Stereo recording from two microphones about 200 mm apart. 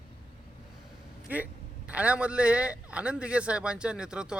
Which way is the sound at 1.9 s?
5° right (ahead or behind).